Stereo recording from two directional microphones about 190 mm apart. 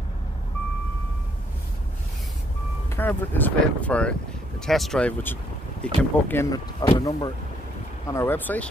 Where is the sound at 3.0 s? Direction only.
10° left (ahead or behind).